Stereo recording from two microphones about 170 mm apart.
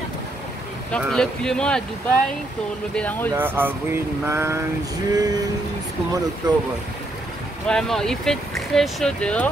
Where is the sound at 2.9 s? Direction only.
10° left (ahead or behind).